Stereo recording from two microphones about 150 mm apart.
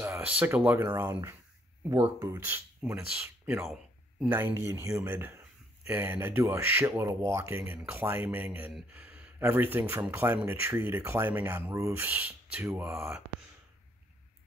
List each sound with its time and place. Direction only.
0.0 s speech: 10° right (ahead or behind)
4.2 s speech: 15° right (ahead or behind)